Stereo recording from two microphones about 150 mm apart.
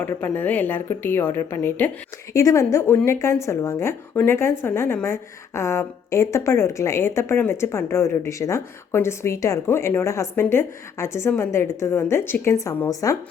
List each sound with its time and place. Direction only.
0.0 s a woman's voice: 15° left (ahead or behind)